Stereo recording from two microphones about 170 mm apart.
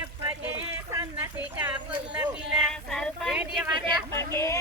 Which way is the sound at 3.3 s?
10° right (ahead or behind).